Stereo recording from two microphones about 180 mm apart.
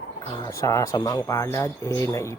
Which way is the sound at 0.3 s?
20° left (ahead or behind).